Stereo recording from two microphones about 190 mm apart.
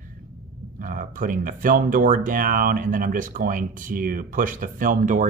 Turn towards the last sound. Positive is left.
turn(degrees=-45)  # may be behind; listen again after turning